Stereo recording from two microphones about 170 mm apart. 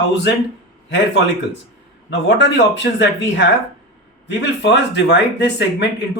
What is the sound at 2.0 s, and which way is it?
Speech, 90° left.